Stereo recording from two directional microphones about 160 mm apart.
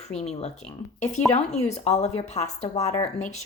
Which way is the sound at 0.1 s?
40° left (ahead or behind).